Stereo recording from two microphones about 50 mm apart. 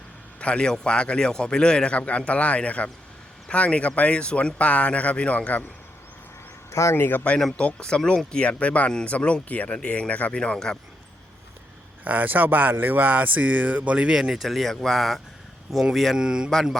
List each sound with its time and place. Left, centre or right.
0.3 s a man's voice: left
6.7 s a man's voice: left
6.9 s speech: left
7.8 s a man's voice: centre
9.1 s a man's voice: left
12.0 s speech: right
14.2 s speech: centre
16.1 s speech: centre